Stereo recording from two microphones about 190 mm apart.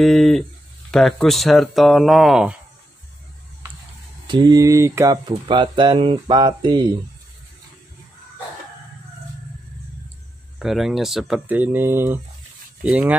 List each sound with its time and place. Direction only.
0.0 s speech: centre (ahead or behind)
4.3 s speech: 20° right (ahead or behind)
10.6 s speech: centre (ahead or behind)